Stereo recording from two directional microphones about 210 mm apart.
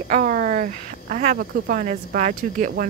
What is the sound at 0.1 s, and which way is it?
Speech, 40° right (ahead or behind).